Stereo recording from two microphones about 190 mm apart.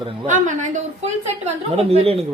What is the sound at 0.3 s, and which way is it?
A woman's voice, 40° right (ahead or behind).